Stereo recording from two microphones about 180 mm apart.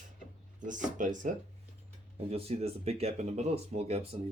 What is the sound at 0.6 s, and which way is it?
Speech, 45° right (ahead or behind).